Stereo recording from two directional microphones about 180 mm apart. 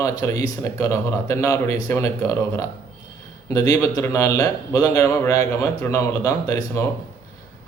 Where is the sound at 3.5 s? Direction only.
20° left (ahead or behind).